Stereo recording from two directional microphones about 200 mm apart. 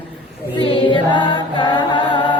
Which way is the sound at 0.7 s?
25° left (ahead or behind).